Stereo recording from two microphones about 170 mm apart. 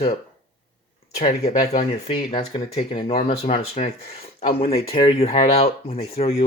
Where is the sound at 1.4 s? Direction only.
55° left (ahead or behind).